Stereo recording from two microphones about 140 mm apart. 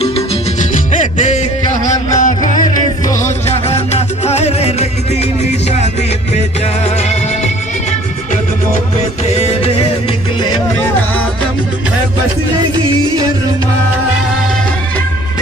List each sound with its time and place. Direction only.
2.1 s music: 70° left (ahead or behind)
3.4 s music: 50° left (ahead or behind)